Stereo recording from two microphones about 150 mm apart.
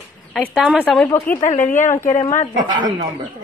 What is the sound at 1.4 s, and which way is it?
Speech, 55° left (ahead or behind).